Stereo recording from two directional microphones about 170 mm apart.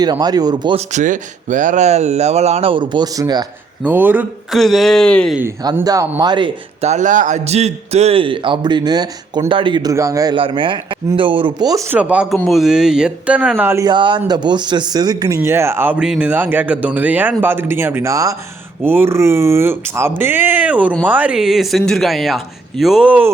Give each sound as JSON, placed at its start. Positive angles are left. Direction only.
{"t": 0.0, "sound": "a man's voice", "side_deg": -25}
{"t": 0.9, "sound": "speech", "side_deg": -45}
{"t": 3.8, "sound": "speech", "side_deg": -10}
{"t": 4.5, "sound": "speech", "side_deg": 0}
{"t": 5.7, "sound": "a man's voice", "side_deg": -20}
{"t": 6.8, "sound": "a man's voice", "side_deg": -45}
{"t": 10.3, "sound": "a man's voice", "side_deg": -30}
{"t": 11.9, "sound": "speech", "side_deg": -10}
{"t": 13.8, "sound": "a man's voice", "side_deg": -30}